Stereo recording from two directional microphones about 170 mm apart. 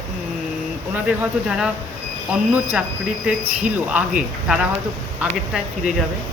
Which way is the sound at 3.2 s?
5° right (ahead or behind).